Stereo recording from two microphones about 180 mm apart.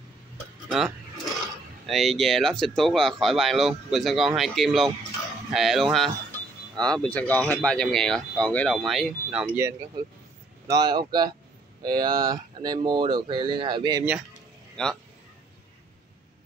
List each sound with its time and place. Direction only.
0.7 s speech: centre (ahead or behind)
10.7 s speech: 25° right (ahead or behind)
14.8 s speech: 5° left (ahead or behind)